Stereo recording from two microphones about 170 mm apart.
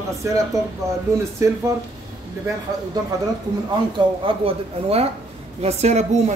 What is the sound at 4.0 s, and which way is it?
Speech, 30° right (ahead or behind).